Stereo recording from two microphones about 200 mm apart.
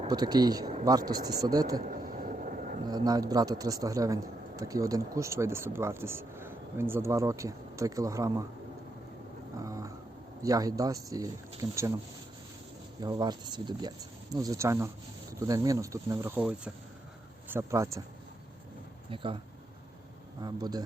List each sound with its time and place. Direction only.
0.0 s speech: 20° right (ahead or behind)
1.9 s a sound: 45° right (ahead or behind)
2.8 s speech: 20° right (ahead or behind)
9.6 s cat: 15° right (ahead or behind)
10.4 s speech: 15° right (ahead or behind)
13.0 s speech: 20° right (ahead or behind)
19.1 s speech: 25° right (ahead or behind)
20.4 s speech: 20° right (ahead or behind)